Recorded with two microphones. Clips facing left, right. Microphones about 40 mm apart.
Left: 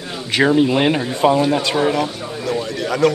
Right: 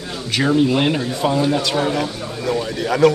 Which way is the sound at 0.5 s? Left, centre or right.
Centre.